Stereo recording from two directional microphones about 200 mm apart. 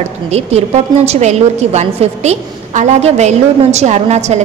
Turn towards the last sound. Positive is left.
turn(degrees=-35)  # may be behind; listen again after turning